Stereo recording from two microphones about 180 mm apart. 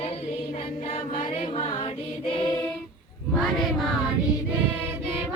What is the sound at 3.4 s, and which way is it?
Child singing, centre (ahead or behind).